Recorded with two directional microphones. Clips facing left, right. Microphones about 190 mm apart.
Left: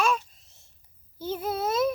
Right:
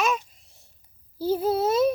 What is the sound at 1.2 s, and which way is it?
Speech, 30° right (ahead or behind).